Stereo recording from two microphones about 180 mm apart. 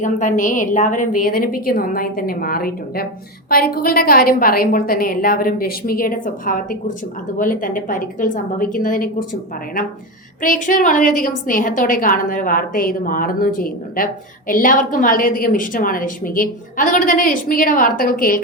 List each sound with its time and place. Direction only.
0.0 s a woman's voice: 45° left (ahead or behind)
10.4 s a woman's voice: 50° left (ahead or behind)